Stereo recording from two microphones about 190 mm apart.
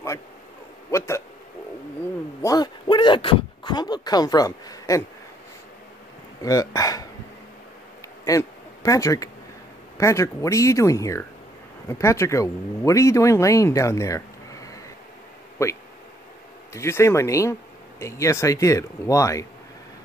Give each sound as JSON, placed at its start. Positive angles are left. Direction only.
{"t": 0.9, "sound": "speech", "side_deg": 15}
{"t": 2.4, "sound": "speech", "side_deg": 20}
{"t": 6.4, "sound": "speech", "side_deg": 15}
{"t": 8.3, "sound": "speech", "side_deg": 15}